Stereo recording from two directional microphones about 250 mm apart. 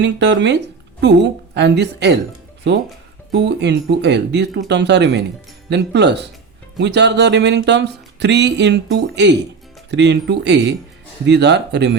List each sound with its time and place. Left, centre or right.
0.0 s speech: right
3.3 s speech: right